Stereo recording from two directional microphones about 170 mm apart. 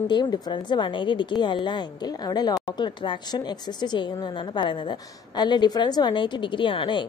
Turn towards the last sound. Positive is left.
turn(degrees=30)  # may be behind; listen again after turning